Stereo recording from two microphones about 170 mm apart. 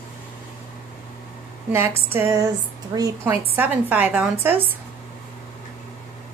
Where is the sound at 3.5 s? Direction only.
10° right (ahead or behind).